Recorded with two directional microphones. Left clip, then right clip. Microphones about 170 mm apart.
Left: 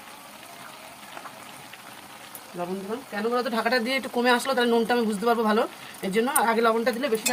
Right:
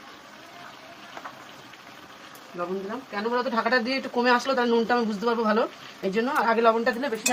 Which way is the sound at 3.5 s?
30° left (ahead or behind).